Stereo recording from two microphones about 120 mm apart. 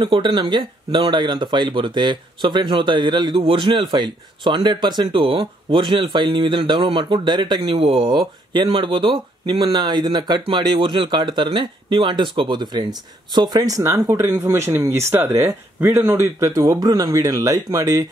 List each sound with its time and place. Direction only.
0.0 s speech: 40° right (ahead or behind)
7.7 s speech: 50° right (ahead or behind); by 18.0 s 30° right (ahead or behind)